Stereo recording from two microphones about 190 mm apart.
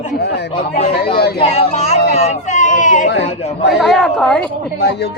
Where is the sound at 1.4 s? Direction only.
35° left (ahead or behind).